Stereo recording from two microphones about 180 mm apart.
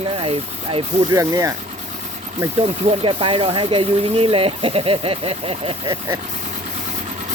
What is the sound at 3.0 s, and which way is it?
Speech, 30° right (ahead or behind).